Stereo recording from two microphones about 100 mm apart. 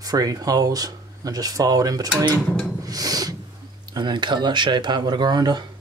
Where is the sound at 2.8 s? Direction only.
40° right (ahead or behind).